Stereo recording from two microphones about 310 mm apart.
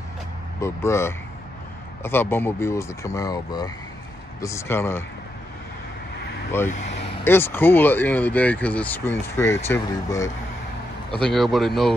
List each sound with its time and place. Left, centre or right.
0.6 s speech: centre
6.7 s speech: left
7.2 s speech: centre